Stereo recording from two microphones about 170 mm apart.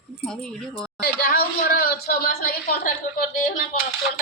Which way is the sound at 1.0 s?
60° left (ahead or behind).